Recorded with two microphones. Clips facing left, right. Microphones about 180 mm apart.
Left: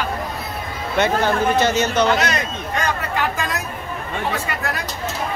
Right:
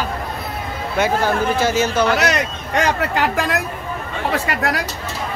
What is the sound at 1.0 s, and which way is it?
Speech, 10° right (ahead or behind).